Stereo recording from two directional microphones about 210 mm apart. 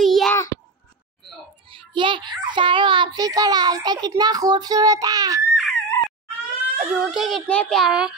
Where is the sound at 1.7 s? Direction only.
25° right (ahead or behind).